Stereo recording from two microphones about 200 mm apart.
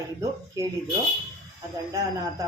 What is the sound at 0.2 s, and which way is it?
Speech, 15° right (ahead or behind).